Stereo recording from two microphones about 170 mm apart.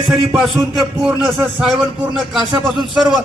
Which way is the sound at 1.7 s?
Centre (ahead or behind).